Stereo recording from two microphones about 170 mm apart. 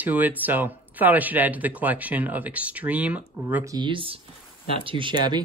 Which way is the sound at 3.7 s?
30° right (ahead or behind).